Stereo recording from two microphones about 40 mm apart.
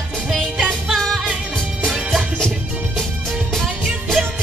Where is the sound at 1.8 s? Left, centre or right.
Centre.